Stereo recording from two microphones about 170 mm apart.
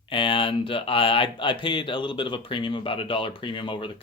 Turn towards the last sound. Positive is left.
turn(degrees=30)  # may be behind; listen again after turning